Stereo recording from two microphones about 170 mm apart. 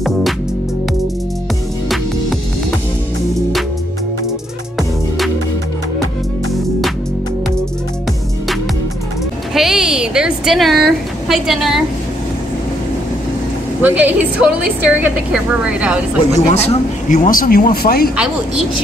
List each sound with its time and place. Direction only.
9.5 s a sound: centre (ahead or behind)
13.8 s a woman's voice: 10° right (ahead or behind)
16.3 s speech: 40° left (ahead or behind); by 18.1 s 60° left (ahead or behind)